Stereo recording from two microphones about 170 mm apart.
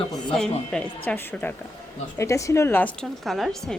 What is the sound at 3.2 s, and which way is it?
Speech, centre (ahead or behind).